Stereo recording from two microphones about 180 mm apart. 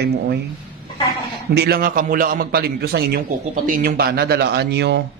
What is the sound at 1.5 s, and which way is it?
A man's voice, 60° right (ahead or behind).